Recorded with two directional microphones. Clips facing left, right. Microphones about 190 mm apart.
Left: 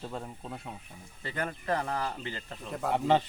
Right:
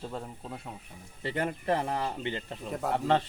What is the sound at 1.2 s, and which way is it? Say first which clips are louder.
Speech: right 4 dB; 25° right (ahead or behind).